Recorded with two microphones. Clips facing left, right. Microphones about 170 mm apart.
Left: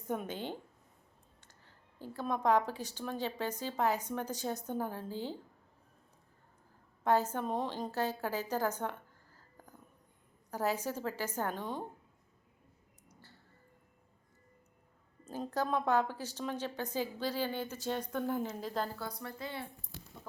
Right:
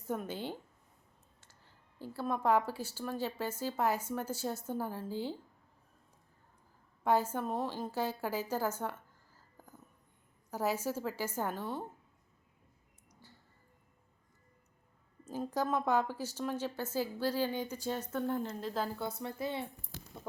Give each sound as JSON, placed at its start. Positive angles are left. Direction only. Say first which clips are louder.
{"t": 0.1, "sound": "speech", "louder": "even", "side_deg": -10}
{"t": 7.0, "sound": "a woman's voice", "louder": "even", "side_deg": -10}
{"t": 11.5, "sound": "a woman's voice", "louder": "even", "side_deg": 15}
{"t": 13.1, "sound": "a sound", "louder": "right 1 dB", "side_deg": -15}
{"t": 15.2, "sound": "speech", "louder": "right 1 dB", "side_deg": -10}
{"t": 18.2, "sound": "speech", "louder": "even", "side_deg": 5}
{"t": 18.9, "sound": "speech", "louder": "right 4 dB", "side_deg": -25}